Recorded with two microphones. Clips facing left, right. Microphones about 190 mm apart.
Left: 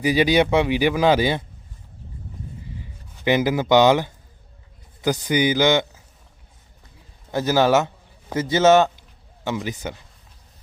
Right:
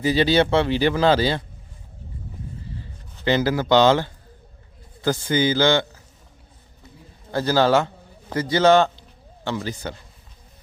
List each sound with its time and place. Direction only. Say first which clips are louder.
0.0 s speech: left 1 dB; 15° left (ahead or behind)
2.7 s a man's voice: right 1 dB; 15° left (ahead or behind)
7.3 s a man's voice: even; 15° left (ahead or behind)